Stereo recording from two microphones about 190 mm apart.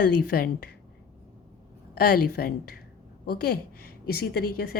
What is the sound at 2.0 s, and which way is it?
A woman's voice, 50° left (ahead or behind).